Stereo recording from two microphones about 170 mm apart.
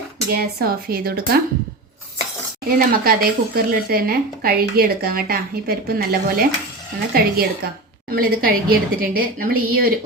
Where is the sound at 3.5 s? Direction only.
60° right (ahead or behind).